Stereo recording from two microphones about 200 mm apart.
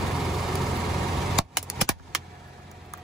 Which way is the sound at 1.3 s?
Centre (ahead or behind).